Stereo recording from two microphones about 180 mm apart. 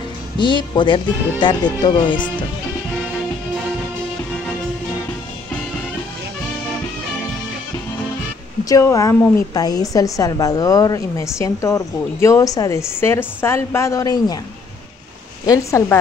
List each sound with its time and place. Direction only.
0.4 s speech: 25° left (ahead or behind)
8.6 s a woman's voice: 20° left (ahead or behind)
15.4 s a woman's voice: 20° left (ahead or behind)